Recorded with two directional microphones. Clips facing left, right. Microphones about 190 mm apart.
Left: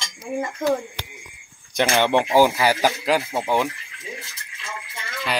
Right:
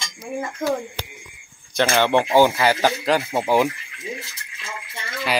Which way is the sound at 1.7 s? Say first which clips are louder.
Right 1 dB; 15° left (ahead or behind).